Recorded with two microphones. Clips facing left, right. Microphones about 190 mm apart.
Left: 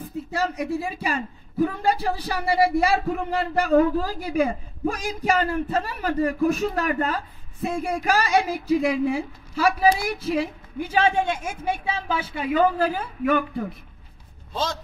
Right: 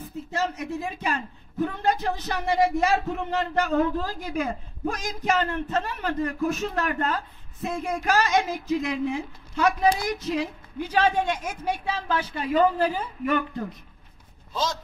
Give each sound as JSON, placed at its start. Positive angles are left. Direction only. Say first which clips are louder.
{"t": 0.3, "sound": "a man's voice", "louder": "left 3 dB", "side_deg": 10}
{"t": 14.5, "sound": "speech", "louder": "left 1 dB", "side_deg": 60}